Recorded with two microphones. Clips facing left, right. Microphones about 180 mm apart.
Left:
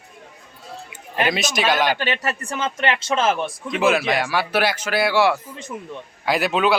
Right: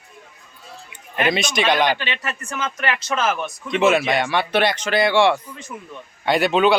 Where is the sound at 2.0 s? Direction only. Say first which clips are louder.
Left 4 dB; 40° left (ahead or behind).